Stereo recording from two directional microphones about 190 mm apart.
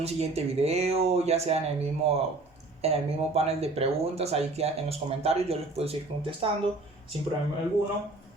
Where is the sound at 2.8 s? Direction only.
35° right (ahead or behind).